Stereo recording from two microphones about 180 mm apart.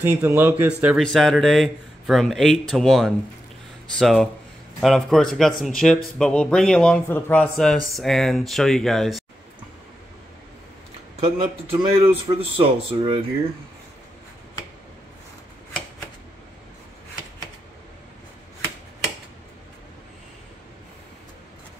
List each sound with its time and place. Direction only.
0.0 s speech: 15° right (ahead or behind)
11.2 s speech: 35° right (ahead or behind)